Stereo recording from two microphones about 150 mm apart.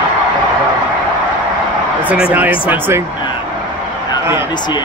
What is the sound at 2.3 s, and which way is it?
Speech, 10° right (ahead or behind).